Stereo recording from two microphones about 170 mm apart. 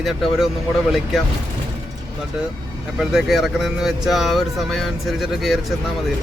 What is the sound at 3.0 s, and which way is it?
Speech, centre (ahead or behind).